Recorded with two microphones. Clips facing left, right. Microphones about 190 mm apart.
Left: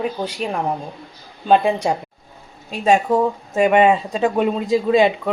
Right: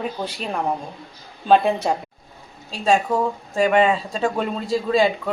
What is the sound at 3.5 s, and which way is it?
Speech, 15° left (ahead or behind).